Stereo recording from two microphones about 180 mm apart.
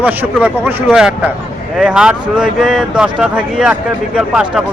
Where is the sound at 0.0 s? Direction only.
10° right (ahead or behind).